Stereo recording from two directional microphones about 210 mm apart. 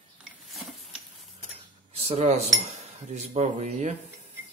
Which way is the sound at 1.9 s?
30° right (ahead or behind).